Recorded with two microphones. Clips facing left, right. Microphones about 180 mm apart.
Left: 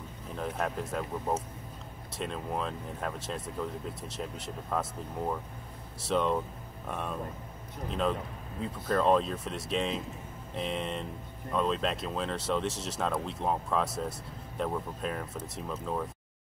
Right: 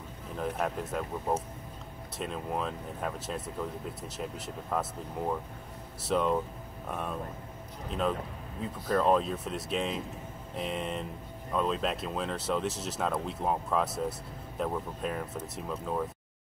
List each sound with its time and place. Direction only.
0.4 s speech: centre (ahead or behind)